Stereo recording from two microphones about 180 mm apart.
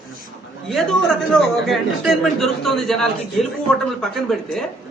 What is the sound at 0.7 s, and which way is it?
A man's voice, centre (ahead or behind).